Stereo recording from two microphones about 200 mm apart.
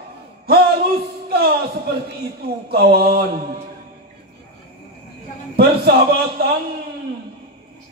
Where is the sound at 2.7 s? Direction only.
50° right (ahead or behind).